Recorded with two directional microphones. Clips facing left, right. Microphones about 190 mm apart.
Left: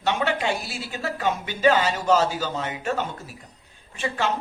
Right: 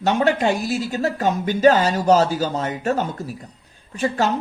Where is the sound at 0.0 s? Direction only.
40° right (ahead or behind).